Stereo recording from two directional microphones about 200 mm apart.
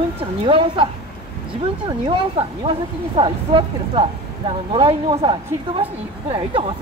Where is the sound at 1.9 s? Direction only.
25° right (ahead or behind).